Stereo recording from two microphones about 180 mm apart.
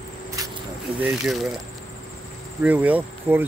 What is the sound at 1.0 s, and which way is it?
Speech, centre (ahead or behind).